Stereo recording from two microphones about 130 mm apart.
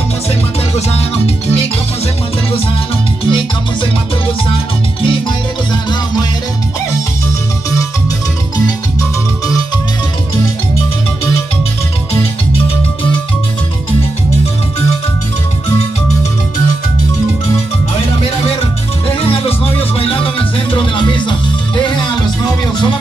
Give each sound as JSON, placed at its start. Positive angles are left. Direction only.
{"t": 0.7, "sound": "music", "side_deg": 50}
{"t": 3.3, "sound": "music", "side_deg": 40}
{"t": 19.0, "sound": "music", "side_deg": 45}